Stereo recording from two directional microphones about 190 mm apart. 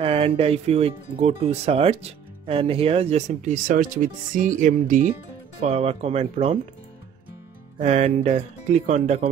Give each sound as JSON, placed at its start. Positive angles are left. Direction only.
{"t": 0.0, "sound": "speech", "side_deg": -30}
{"t": 7.8, "sound": "speech", "side_deg": -35}